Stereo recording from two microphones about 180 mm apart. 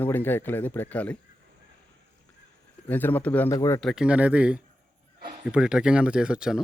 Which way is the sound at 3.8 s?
Centre (ahead or behind).